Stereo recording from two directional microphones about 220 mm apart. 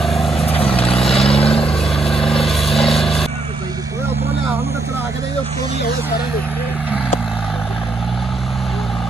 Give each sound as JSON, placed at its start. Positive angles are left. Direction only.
{"t": 0.0, "sound": "vehicle", "side_deg": 0}
{"t": 0.5, "sound": "vehicle", "side_deg": 25}
{"t": 2.0, "sound": "vehicle", "side_deg": 0}